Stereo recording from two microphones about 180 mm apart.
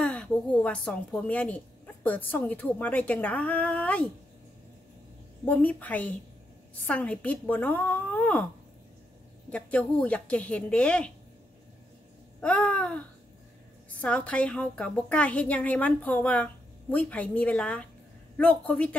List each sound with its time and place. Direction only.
0.0 s a woman's voice: 5° left (ahead or behind)
5.4 s a woman's voice: 10° left (ahead or behind)
9.5 s a woman's voice: 5° left (ahead or behind)
12.4 s a sound: 10° left (ahead or behind)
13.8 s a woman's voice: 5° left (ahead or behind)